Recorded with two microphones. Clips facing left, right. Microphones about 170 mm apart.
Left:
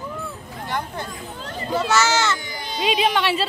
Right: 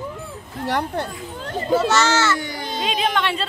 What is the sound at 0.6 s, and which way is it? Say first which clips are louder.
Speech: right 5 dB; 70° right (ahead or behind).